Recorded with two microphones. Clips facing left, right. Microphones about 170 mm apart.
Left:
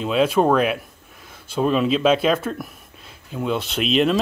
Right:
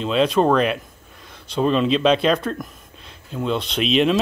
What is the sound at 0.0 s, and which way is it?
Speech, 5° left (ahead or behind).